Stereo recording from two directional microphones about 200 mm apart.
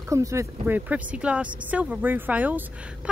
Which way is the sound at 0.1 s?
15° right (ahead or behind).